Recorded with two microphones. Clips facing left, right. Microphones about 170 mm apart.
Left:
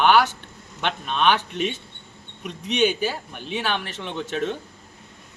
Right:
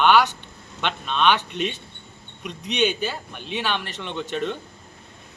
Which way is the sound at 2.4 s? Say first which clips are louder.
Left 2 dB; 10° left (ahead or behind).